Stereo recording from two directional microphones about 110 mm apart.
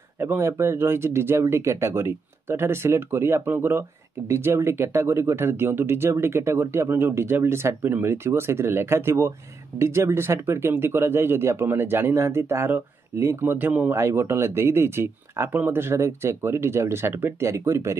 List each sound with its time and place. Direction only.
0.2 s speech: 20° right (ahead or behind)